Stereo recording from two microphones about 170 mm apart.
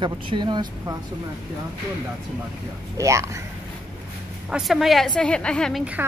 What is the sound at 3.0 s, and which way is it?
Speech, 15° right (ahead or behind).